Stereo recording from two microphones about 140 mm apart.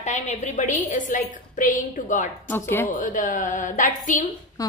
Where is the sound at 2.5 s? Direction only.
15° left (ahead or behind).